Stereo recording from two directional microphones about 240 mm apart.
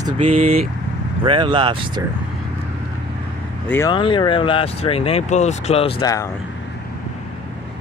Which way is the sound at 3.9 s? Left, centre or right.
Left.